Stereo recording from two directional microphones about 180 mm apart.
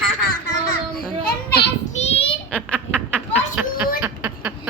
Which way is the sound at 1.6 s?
30° left (ahead or behind).